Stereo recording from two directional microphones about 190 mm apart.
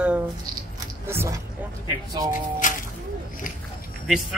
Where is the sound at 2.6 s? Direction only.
40° left (ahead or behind).